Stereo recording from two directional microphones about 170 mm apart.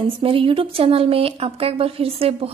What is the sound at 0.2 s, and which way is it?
A woman's voice, 30° right (ahead or behind).